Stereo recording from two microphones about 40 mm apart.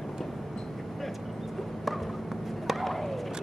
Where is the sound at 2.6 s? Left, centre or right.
Centre.